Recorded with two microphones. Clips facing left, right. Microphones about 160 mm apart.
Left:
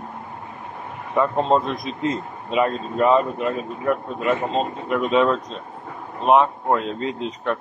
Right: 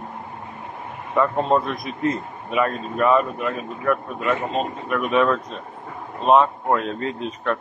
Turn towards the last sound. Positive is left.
turn(degrees=20)  # may be behind; listen again after turning